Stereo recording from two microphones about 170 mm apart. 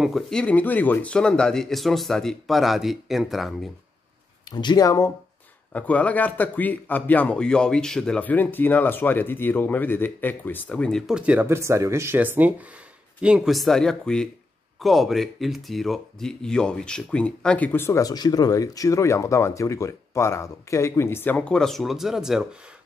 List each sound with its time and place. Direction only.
0.0 s speech: centre (ahead or behind)
4.5 s speech: 25° left (ahead or behind)
5.7 s speech: 10° left (ahead or behind)